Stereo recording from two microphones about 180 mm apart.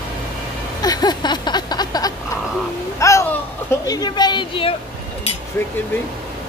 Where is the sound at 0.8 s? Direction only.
20° left (ahead or behind).